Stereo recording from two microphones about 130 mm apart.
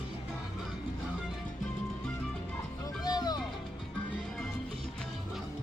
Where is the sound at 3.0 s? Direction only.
30° left (ahead or behind).